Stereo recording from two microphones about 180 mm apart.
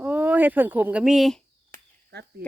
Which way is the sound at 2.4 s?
65° right (ahead or behind).